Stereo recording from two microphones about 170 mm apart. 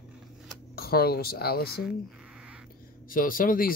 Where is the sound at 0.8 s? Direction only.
65° left (ahead or behind).